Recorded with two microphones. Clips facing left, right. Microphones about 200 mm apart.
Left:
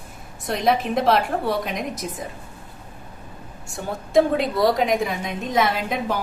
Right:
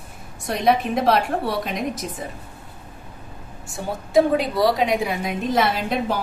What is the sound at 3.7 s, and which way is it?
A woman's voice, centre (ahead or behind).